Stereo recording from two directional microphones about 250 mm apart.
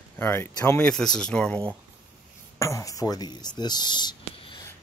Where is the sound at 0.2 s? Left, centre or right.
Centre.